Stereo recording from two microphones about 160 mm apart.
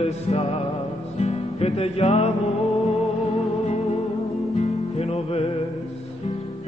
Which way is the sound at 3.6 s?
45° left (ahead or behind).